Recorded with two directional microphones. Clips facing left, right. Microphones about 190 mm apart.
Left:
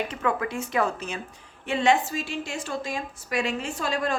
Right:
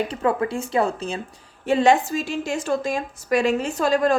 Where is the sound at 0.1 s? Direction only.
35° right (ahead or behind).